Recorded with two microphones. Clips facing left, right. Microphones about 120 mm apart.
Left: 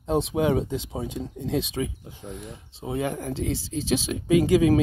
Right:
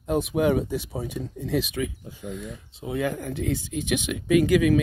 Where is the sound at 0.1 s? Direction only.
25° left (ahead or behind).